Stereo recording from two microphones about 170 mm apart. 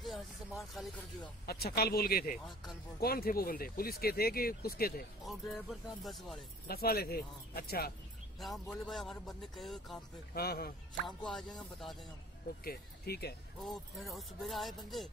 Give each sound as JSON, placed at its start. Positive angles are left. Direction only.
{"t": 0.0, "sound": "music", "side_deg": 0}
{"t": 1.4, "sound": "speech", "side_deg": 65}
{"t": 5.2, "sound": "a man's voice", "side_deg": 0}
{"t": 6.7, "sound": "speech", "side_deg": 65}
{"t": 8.4, "sound": "a man's voice", "side_deg": 0}
{"t": 10.3, "sound": "speech", "side_deg": 65}
{"t": 11.1, "sound": "a man's voice", "side_deg": 0}
{"t": 12.6, "sound": "speech", "side_deg": 70}
{"t": 13.6, "sound": "a man's voice", "side_deg": 0}